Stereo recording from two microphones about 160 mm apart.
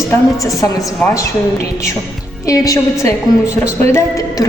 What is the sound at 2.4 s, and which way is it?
Speech, 20° left (ahead or behind).